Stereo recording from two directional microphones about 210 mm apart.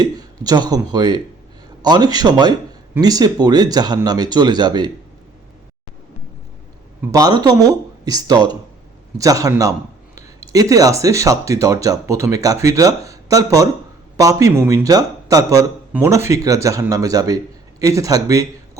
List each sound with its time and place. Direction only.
0.0 s a man's voice: 20° right (ahead or behind)
7.1 s a man's voice: 20° right (ahead or behind)